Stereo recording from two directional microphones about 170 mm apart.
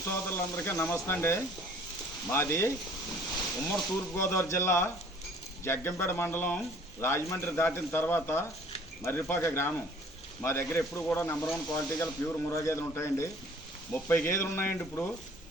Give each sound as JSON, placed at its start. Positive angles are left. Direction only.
{"t": 0.1, "sound": "speech", "side_deg": 15}
{"t": 4.1, "sound": "speech", "side_deg": 15}